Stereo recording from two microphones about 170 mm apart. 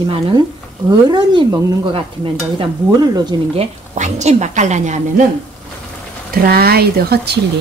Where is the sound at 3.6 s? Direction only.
45° right (ahead or behind).